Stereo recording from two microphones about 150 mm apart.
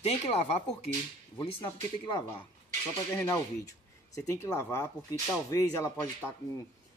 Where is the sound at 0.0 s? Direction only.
45° left (ahead or behind).